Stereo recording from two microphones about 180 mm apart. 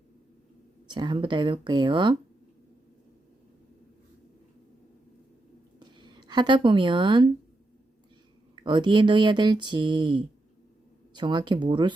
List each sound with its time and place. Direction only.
0.9 s speech: 25° right (ahead or behind)
5.8 s speech: 25° right (ahead or behind)
8.5 s speech: 25° right (ahead or behind)